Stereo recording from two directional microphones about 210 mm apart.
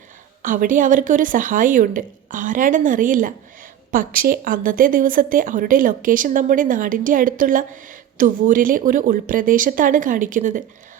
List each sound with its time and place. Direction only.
0.4 s speech: 40° right (ahead or behind)